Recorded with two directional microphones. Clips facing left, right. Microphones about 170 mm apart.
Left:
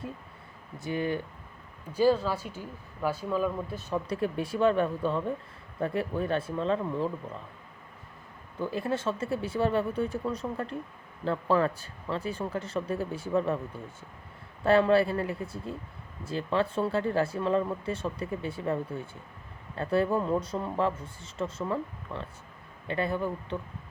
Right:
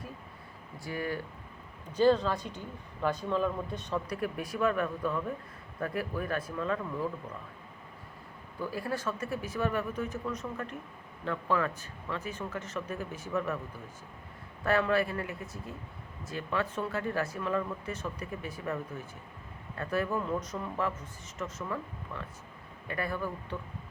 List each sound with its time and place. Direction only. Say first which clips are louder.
0.8 s speech: left 5 dB; 20° left (ahead or behind)
1.9 s speech: left 1 dB; 10° left (ahead or behind)
3.9 s speech: left 4 dB; 25° left (ahead or behind)
8.5 s speech: left 4 dB; 20° left (ahead or behind)